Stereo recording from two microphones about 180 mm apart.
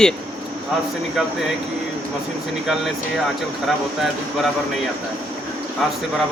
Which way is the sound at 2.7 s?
Centre (ahead or behind).